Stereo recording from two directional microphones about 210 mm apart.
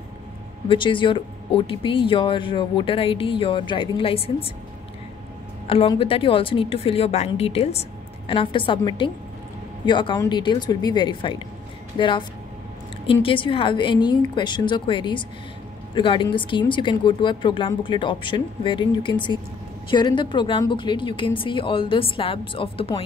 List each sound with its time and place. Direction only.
0.7 s speech: 25° left (ahead or behind)
5.7 s speech: 25° left (ahead or behind)